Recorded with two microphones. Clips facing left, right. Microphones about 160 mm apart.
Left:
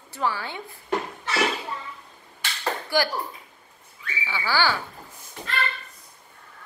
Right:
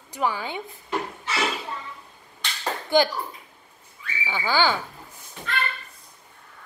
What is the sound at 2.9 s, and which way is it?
Speech, 20° right (ahead or behind).